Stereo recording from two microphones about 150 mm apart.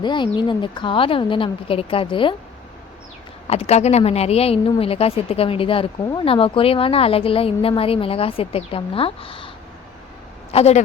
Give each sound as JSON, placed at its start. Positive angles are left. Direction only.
{"t": 0.0, "sound": "a woman's voice", "side_deg": 30}
{"t": 3.4, "sound": "a woman's voice", "side_deg": 40}
{"t": 10.5, "sound": "a woman's voice", "side_deg": 45}